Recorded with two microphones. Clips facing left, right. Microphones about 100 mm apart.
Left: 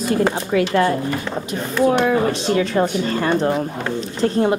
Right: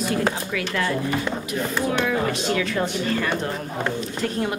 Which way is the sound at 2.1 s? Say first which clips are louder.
Left 5 dB; 35° left (ahead or behind).